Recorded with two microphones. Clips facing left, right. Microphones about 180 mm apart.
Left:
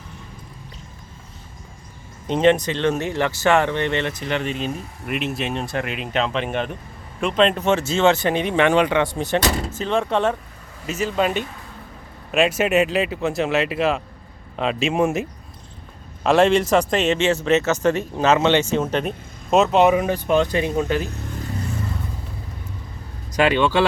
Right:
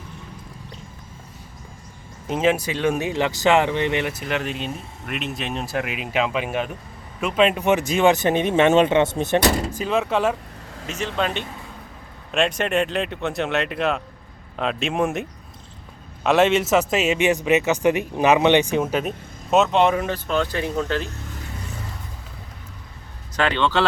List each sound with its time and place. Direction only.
2.2 s speech: 5° right (ahead or behind)
10.8 s a man's voice: 5° left (ahead or behind)
23.3 s speech: 10° left (ahead or behind)